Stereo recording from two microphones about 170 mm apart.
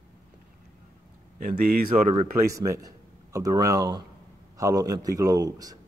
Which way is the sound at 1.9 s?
45° right (ahead or behind).